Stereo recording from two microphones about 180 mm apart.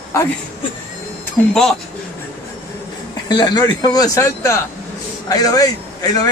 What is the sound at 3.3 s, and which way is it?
A man's voice, 25° left (ahead or behind).